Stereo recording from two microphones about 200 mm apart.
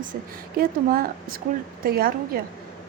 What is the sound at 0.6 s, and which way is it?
Speech, 45° right (ahead or behind).